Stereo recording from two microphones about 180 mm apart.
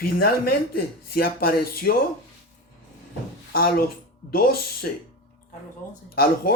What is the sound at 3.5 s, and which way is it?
Speech, 55° left (ahead or behind).